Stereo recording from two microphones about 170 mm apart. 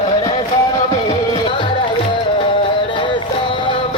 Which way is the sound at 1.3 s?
30° left (ahead or behind).